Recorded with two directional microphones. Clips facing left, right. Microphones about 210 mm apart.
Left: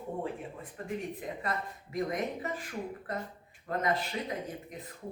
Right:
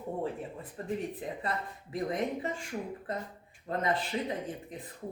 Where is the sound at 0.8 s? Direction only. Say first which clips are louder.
Right 2 dB; 30° right (ahead or behind).